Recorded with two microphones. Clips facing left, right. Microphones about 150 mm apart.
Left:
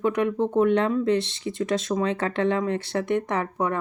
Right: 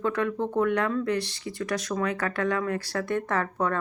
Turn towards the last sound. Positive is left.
turn(degrees=15)  # may be behind; listen again after turning